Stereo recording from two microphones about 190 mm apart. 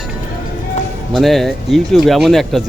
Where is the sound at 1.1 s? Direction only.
Centre (ahead or behind).